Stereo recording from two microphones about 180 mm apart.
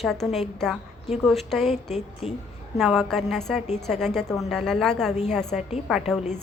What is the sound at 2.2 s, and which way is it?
Speech, 30° left (ahead or behind).